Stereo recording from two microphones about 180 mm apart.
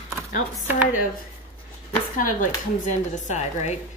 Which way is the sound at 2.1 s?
45° left (ahead or behind).